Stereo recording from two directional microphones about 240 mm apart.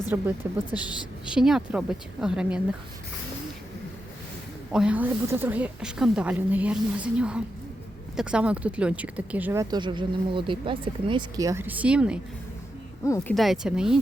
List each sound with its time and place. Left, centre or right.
0.1 s speech: centre
4.7 s speech: centre